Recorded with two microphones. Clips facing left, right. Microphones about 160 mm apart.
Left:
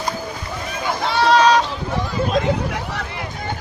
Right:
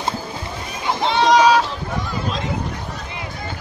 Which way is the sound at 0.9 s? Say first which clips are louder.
Right 1 dB; 20° right (ahead or behind).